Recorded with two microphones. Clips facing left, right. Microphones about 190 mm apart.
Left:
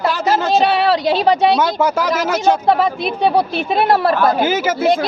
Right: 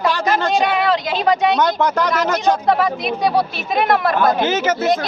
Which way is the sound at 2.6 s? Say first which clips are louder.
Left 2 dB; 30° left (ahead or behind).